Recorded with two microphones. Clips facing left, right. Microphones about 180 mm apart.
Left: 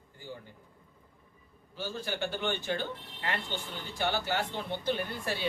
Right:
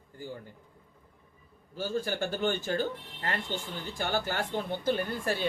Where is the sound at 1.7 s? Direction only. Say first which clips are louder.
Right 5 dB; 45° right (ahead or behind).